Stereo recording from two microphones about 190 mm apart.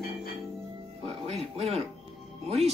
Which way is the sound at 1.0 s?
35° right (ahead or behind).